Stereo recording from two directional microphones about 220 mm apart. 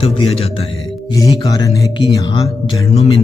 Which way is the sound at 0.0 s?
25° left (ahead or behind).